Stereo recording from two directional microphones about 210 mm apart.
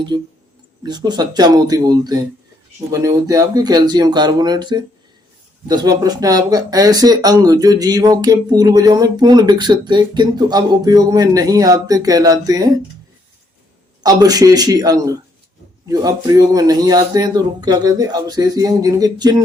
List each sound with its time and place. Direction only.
0.1 s speech: 20° right (ahead or behind)
14.0 s speech: 15° right (ahead or behind)